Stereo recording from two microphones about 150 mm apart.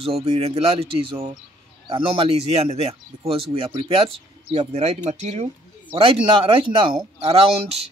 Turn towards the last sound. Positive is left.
turn(degrees=-40)  # may be behind; listen again after turning